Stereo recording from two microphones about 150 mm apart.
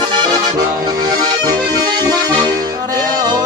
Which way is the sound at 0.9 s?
25° right (ahead or behind).